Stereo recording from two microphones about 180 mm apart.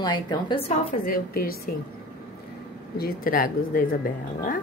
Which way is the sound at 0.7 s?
50° left (ahead or behind).